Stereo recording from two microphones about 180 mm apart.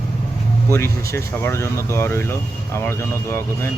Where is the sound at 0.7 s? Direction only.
15° left (ahead or behind).